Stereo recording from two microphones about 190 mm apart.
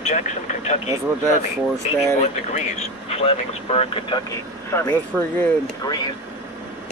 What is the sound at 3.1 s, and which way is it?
Speech, 30° left (ahead or behind).